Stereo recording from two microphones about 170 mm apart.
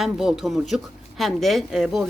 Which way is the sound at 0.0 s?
Centre (ahead or behind).